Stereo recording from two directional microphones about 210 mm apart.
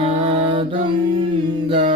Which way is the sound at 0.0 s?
25° right (ahead or behind).